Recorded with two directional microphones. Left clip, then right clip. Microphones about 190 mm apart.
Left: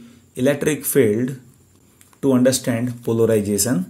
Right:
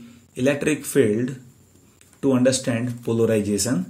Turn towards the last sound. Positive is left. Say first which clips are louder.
# left 3 dB
turn(degrees=30)  # may be behind; listen again after turning